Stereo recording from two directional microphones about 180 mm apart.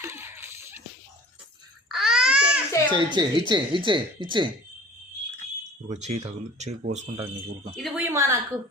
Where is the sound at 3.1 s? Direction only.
25° right (ahead or behind).